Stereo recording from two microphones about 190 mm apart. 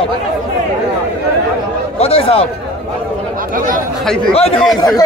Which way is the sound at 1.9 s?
30° left (ahead or behind).